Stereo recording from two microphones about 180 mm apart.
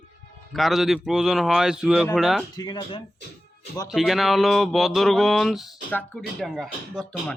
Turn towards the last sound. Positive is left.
turn(degrees=0)  # may be behind; listen again after turning